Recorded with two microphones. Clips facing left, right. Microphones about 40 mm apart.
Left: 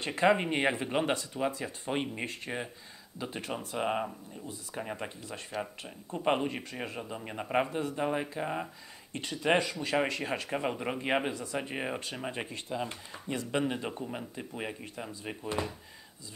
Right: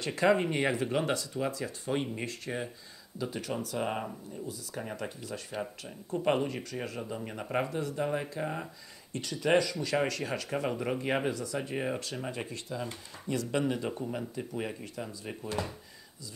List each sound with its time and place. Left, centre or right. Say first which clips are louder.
0.0 s speech: even; left
3.5 s speech: left 3 dB; centre
7.0 s speech: right 1 dB; centre
9.1 s speech: right 1 dB; left